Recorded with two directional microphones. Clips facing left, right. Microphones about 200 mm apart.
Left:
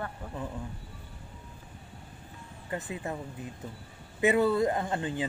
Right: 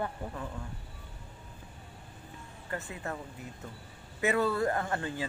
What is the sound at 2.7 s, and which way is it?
Speech, 15° left (ahead or behind).